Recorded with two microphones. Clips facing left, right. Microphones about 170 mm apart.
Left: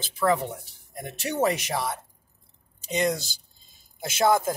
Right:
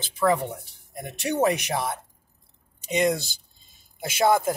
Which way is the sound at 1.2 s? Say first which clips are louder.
Right 2 dB; 15° right (ahead or behind).